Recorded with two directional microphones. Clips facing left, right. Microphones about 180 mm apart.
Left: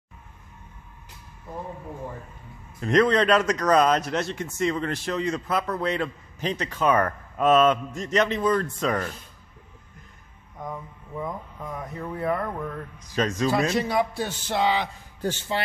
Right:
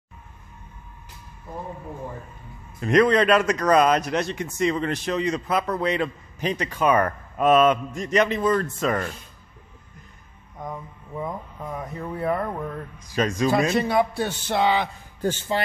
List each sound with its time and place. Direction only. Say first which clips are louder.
2.8 s a man's voice: right 2 dB; 10° right (ahead or behind)
12.1 s speech: right 1 dB; 30° right (ahead or behind)
13.0 s a man's voice: right 2 dB; 10° right (ahead or behind)
13.7 s a man's voice: right 3 dB; 55° right (ahead or behind)